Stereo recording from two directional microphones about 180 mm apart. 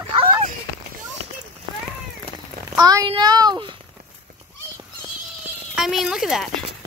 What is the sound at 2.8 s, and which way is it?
Child singing, 20° right (ahead or behind).